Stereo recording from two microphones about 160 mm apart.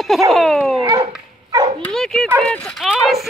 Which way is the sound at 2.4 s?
5° left (ahead or behind).